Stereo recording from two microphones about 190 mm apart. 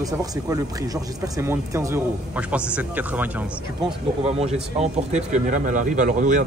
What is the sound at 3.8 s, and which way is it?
Speech, 35° right (ahead or behind).